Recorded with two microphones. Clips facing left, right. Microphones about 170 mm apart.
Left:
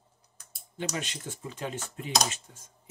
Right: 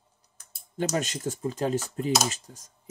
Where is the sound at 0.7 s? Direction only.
45° right (ahead or behind).